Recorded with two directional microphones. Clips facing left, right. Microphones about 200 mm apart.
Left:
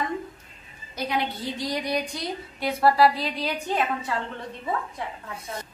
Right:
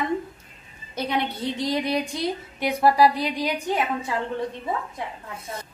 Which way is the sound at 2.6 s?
15° right (ahead or behind).